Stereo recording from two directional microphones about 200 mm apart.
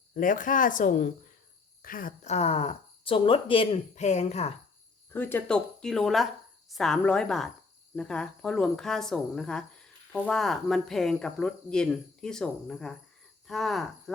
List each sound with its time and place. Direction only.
0.1 s speech: 40° left (ahead or behind)
5.1 s speech: 10° left (ahead or behind)